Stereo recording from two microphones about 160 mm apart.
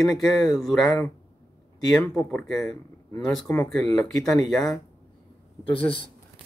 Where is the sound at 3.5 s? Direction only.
15° left (ahead or behind).